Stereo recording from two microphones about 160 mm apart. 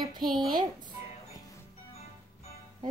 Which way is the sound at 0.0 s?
25° right (ahead or behind).